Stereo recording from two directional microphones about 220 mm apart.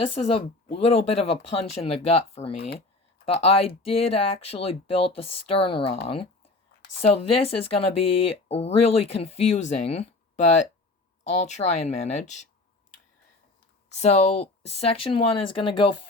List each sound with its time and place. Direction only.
0.3 s speech: 25° left (ahead or behind)
13.9 s speech: 30° left (ahead or behind)